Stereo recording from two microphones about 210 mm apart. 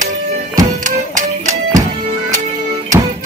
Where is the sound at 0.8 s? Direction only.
35° right (ahead or behind).